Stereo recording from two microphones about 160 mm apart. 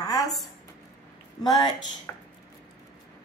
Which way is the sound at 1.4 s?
25° left (ahead or behind).